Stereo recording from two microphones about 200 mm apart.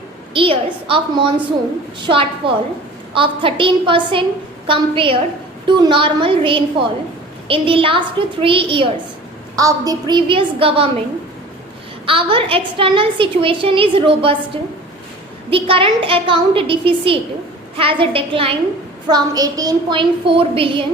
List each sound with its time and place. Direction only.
0.3 s a woman's voice: 25° right (ahead or behind)
12.0 s a woman's voice: 25° right (ahead or behind)